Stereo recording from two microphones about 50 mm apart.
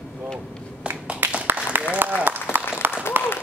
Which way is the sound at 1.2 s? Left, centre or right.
Right.